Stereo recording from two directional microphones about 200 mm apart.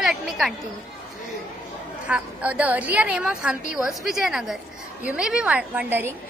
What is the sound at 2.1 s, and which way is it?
A woman's voice, 5° right (ahead or behind).